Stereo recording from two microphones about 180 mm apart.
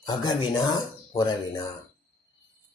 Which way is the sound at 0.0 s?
25° left (ahead or behind).